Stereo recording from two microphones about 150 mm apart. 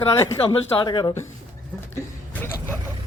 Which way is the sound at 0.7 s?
30° left (ahead or behind).